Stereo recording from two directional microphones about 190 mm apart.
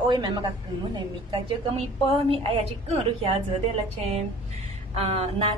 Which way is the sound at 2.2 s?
30° right (ahead or behind).